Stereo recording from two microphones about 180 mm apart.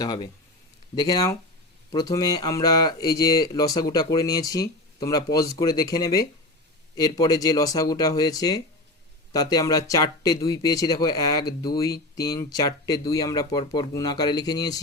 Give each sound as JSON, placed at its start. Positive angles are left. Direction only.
{"t": 0.0, "sound": "speech", "side_deg": 25}